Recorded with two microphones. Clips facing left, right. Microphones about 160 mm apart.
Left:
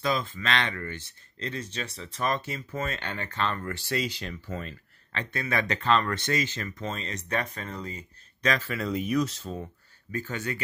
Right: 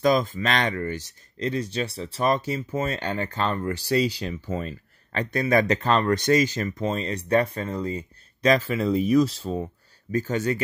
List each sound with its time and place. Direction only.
0.0 s speech: 40° right (ahead or behind)